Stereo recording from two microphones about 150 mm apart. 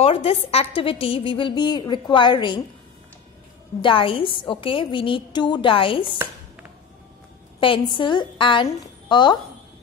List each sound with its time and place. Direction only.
0.0 s a woman's voice: 40° left (ahead or behind)
3.8 s a woman's voice: 35° left (ahead or behind)
7.6 s a woman's voice: 35° left (ahead or behind)